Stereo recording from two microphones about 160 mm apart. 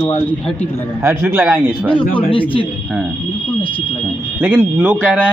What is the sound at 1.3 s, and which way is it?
Speech, 15° right (ahead or behind).